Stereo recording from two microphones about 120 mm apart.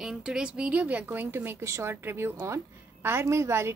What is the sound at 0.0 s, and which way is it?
A woman's voice, 5° right (ahead or behind).